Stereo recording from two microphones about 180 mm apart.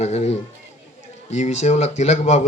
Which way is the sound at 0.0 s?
35° left (ahead or behind).